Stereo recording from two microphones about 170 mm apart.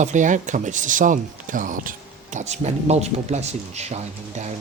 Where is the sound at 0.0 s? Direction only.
45° right (ahead or behind).